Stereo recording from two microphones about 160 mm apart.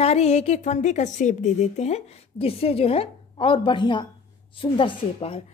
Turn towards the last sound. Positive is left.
turn(degrees=35)  # may be behind; listen again after turning